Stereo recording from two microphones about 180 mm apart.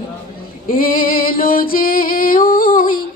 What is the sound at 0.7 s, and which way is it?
Female singing, 50° left (ahead or behind).